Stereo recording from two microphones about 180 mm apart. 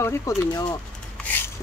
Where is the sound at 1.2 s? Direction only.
10° left (ahead or behind).